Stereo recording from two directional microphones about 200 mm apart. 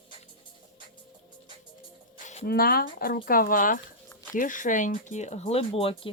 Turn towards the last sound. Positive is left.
turn(degrees=30)  # may be behind; listen again after turning